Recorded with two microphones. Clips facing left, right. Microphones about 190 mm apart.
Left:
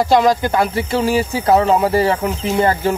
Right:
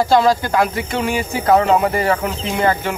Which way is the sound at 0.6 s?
30° left (ahead or behind).